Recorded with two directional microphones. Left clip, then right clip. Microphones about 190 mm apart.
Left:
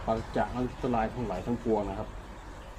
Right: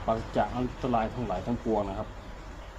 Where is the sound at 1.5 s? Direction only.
15° right (ahead or behind).